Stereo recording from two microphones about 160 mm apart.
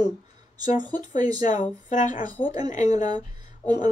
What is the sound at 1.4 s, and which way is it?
A woman's voice, 50° left (ahead or behind).